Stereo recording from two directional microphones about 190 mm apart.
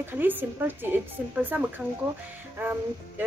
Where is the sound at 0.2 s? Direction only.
10° right (ahead or behind).